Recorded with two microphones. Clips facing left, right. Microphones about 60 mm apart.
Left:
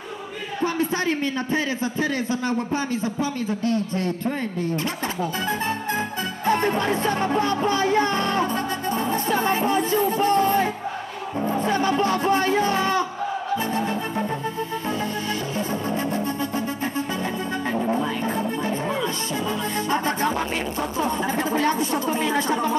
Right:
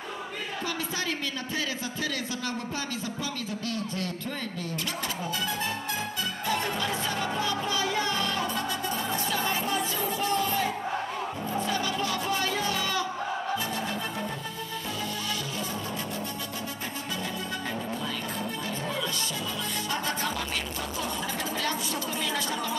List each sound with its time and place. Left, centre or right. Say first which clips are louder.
0.7 s music: left 9 dB; left
6.4 s music: left 9 dB; left
11.4 s speech: left 9 dB; left
13.7 s music: left 7 dB; left
17.7 s music: left 9 dB; left
19.9 s music: left 8 dB; left